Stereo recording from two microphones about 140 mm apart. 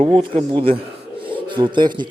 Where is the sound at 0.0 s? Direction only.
40° right (ahead or behind).